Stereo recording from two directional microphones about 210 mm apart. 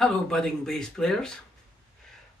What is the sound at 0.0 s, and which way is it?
A man's voice, centre (ahead or behind).